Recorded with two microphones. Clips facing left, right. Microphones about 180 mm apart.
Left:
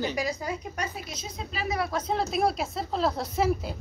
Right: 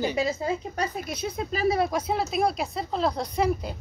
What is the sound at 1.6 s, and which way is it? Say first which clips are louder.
Speech: right 6 dB; 25° right (ahead or behind).